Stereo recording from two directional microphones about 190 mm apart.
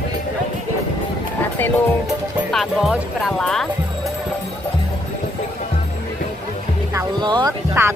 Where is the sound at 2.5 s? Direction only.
Centre (ahead or behind).